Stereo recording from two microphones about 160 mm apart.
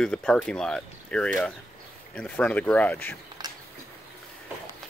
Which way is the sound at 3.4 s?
25° right (ahead or behind).